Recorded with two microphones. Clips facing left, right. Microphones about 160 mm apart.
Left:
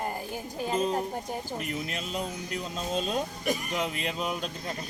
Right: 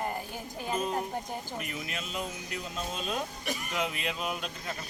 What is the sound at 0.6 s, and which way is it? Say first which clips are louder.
Speech: left 4 dB; 30° left (ahead or behind).